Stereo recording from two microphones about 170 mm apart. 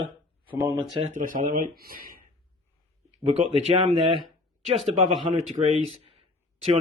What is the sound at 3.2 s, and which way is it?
Speech, 40° right (ahead or behind).